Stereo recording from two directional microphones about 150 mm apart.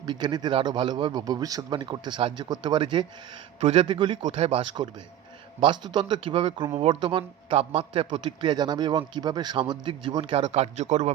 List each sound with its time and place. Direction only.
0.0 s a man's voice: 30° right (ahead or behind); by 11.1 s 45° right (ahead or behind)